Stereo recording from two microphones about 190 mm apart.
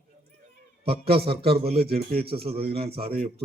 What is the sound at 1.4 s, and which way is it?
A man's voice, 30° right (ahead or behind).